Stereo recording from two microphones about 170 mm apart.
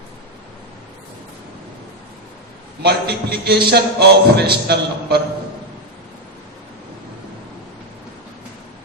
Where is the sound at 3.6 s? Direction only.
70° right (ahead or behind).